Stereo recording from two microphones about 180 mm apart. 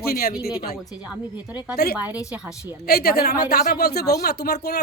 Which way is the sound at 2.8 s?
60° left (ahead or behind).